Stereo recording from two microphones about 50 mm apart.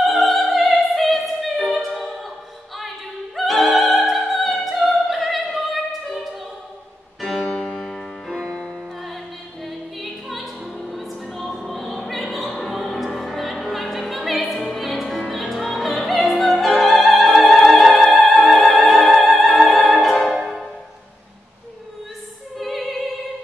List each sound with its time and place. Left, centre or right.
0.0 s opera: centre
3.3 s opera: centre
7.2 s music: centre
7.4 s music: left
7.7 s music: centre
8.3 s music: centre
22.6 s opera: centre